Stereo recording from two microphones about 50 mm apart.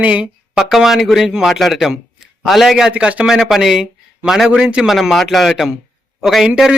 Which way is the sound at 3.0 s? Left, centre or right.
Right.